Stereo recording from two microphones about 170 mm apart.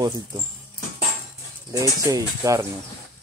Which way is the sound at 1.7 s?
20° right (ahead or behind).